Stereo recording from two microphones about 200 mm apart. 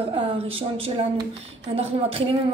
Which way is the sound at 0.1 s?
25° right (ahead or behind).